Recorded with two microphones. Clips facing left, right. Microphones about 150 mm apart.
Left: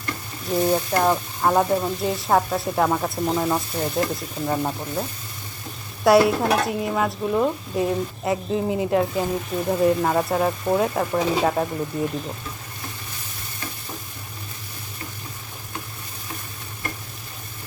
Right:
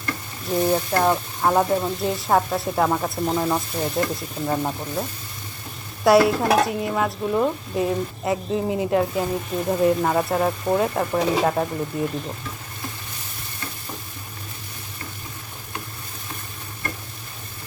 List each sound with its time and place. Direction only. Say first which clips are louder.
0.4 s speech: even; centre (ahead or behind)
6.1 s speech: even; centre (ahead or behind)